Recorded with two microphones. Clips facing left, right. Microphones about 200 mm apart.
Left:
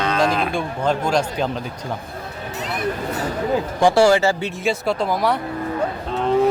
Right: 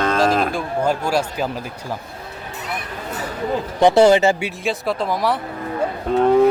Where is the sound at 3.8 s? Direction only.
20° right (ahead or behind).